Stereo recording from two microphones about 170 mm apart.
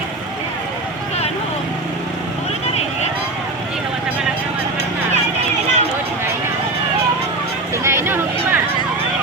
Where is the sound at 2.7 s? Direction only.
40° left (ahead or behind).